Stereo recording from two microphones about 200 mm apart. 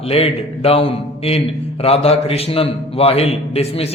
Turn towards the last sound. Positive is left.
turn(degrees=30)  # may be behind; listen again after turning